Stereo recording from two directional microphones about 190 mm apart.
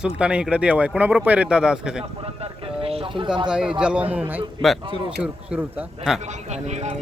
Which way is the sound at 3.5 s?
5° right (ahead or behind).